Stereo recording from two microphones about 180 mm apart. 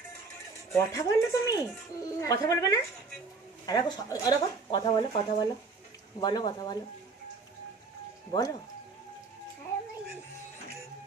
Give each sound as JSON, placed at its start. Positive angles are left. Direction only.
{"t": 0.7, "sound": "speech", "side_deg": 15}